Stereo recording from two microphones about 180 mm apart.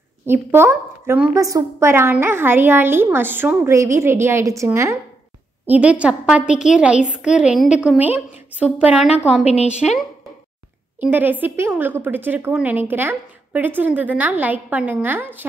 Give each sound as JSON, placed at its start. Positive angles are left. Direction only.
{"t": 0.3, "sound": "a woman's voice", "side_deg": -10}
{"t": 9.4, "sound": "a woman's voice", "side_deg": 35}
{"t": 11.0, "sound": "a woman's voice", "side_deg": -10}